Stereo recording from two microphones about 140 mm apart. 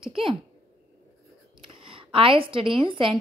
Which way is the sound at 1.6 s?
40° right (ahead or behind).